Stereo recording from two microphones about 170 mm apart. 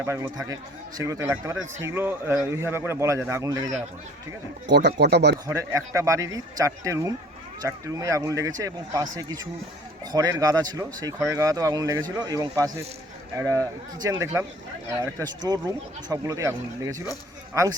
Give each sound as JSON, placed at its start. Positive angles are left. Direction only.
{"t": 0.0, "sound": "a man's voice", "side_deg": -15}
{"t": 4.6, "sound": "speech", "side_deg": -90}
{"t": 5.5, "sound": "speech", "side_deg": -15}